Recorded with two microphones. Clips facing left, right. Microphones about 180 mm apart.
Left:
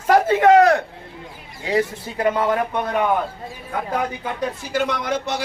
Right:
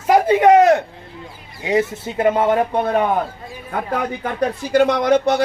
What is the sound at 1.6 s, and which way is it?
Speech, 20° right (ahead or behind).